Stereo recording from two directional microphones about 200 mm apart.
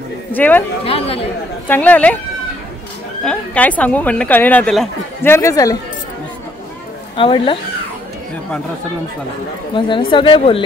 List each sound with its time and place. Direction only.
0.3 s speech: 10° left (ahead or behind)
0.8 s speech: 30° left (ahead or behind)
1.7 s speech: 10° left (ahead or behind)
3.3 s speech: 5° left (ahead or behind)
7.2 s speech: 25° left (ahead or behind)
9.8 s speech: 25° left (ahead or behind)